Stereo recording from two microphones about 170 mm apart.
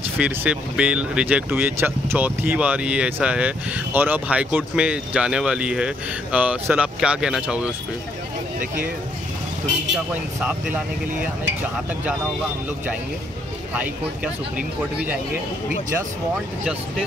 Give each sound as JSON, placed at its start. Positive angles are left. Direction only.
{"t": 0.2, "sound": "speech", "side_deg": -5}
{"t": 8.5, "sound": "speech", "side_deg": -55}
{"t": 10.4, "sound": "speech", "side_deg": -10}